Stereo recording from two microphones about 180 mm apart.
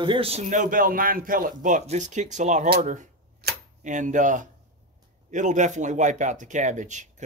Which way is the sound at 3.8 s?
45° right (ahead or behind).